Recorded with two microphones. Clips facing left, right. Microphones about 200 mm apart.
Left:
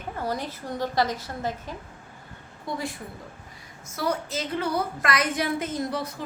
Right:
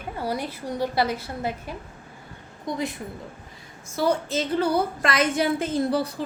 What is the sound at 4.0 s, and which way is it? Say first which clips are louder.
A woman's voice: right 5 dB; 30° right (ahead or behind).